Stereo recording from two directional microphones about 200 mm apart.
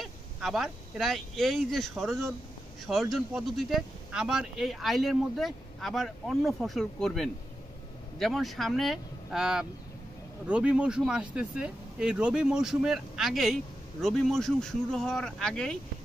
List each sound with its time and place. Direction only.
0.0 s speech: centre (ahead or behind)